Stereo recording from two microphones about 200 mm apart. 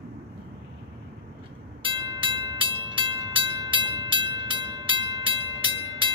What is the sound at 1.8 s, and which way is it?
Train, 25° right (ahead or behind).